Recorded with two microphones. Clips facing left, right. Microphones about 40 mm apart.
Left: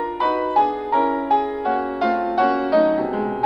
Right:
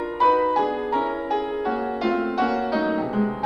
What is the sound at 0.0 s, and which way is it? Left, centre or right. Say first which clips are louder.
Music: right 2 dB; centre.